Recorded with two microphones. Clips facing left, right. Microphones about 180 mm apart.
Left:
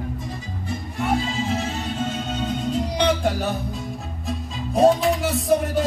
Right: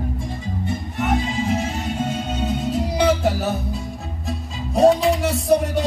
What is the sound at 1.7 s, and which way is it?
Music, 10° right (ahead or behind).